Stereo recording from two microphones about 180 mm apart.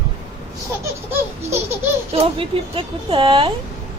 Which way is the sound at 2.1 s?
30° right (ahead or behind).